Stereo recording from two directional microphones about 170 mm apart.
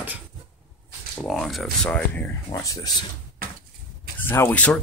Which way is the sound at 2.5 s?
20° left (ahead or behind).